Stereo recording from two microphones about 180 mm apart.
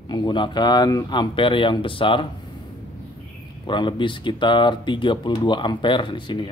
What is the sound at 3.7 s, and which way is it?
Speech, 25° left (ahead or behind).